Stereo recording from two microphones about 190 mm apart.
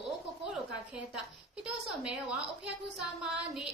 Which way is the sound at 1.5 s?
5° right (ahead or behind).